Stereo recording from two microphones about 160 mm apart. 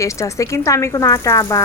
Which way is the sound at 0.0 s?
20° left (ahead or behind).